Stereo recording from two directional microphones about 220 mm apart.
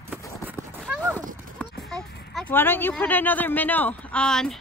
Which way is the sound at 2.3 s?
5° left (ahead or behind).